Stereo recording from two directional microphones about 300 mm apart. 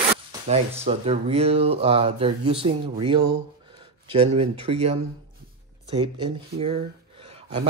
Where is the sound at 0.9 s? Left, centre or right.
Centre.